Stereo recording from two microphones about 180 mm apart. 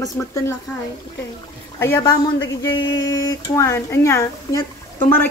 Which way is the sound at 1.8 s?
15° left (ahead or behind).